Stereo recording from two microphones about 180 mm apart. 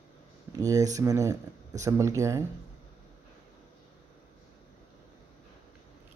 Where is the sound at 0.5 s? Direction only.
20° right (ahead or behind).